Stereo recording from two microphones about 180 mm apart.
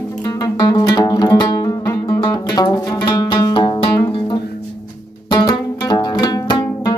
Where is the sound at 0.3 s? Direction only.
20° left (ahead or behind).